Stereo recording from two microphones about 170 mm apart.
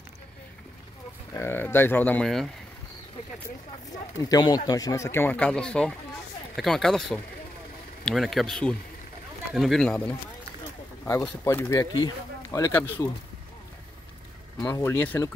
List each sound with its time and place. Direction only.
1.3 s speech: 15° left (ahead or behind)
4.2 s speech: 20° left (ahead or behind)
14.6 s speech: 10° left (ahead or behind)